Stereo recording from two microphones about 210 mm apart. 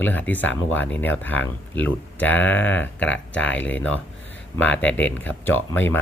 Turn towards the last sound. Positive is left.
turn(degrees=10)  # may be behind; listen again after turning